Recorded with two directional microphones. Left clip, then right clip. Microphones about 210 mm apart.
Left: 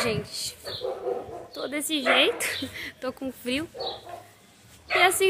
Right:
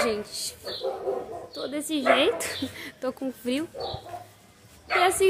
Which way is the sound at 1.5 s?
20° left (ahead or behind).